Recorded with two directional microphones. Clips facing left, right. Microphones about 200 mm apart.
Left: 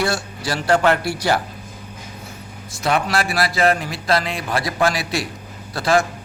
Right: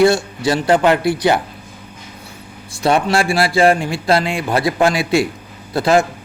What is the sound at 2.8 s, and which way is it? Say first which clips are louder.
A man's voice: right 5 dB; 30° right (ahead or behind).